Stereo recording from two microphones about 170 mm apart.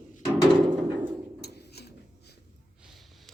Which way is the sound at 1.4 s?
70° left (ahead or behind).